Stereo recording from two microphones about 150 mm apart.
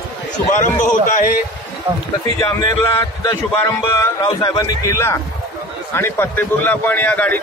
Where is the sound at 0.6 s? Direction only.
60° left (ahead or behind).